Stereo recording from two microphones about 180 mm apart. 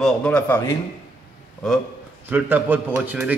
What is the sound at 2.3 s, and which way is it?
A man's voice, 10° right (ahead or behind).